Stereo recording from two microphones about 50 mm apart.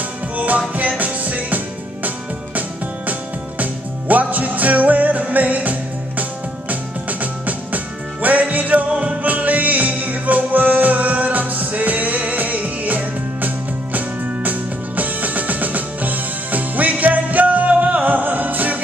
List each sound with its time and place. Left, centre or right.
0.4 s music: right
4.1 s music: right